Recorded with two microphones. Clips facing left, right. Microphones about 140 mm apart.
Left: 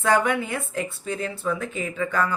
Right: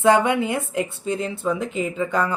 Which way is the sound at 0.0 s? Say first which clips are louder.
Right 4 dB; 20° right (ahead or behind).